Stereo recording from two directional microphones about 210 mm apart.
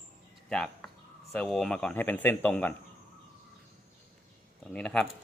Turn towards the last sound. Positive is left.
turn(degrees=5)  # may be behind; listen again after turning